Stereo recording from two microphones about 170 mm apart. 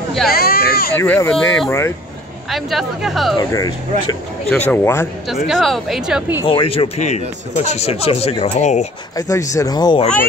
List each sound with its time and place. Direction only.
0.3 s speech: 65° left (ahead or behind)
0.9 s speech: 10° left (ahead or behind)
3.3 s speech: 25° left (ahead or behind)
4.5 s speech: 10° left (ahead or behind)
5.3 s speech: centre (ahead or behind)
6.4 s speech: 30° left (ahead or behind)
9.1 s speech: 20° left (ahead or behind)